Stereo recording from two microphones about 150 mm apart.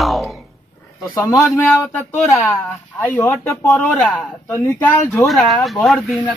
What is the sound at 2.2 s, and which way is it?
Speech, 15° left (ahead or behind).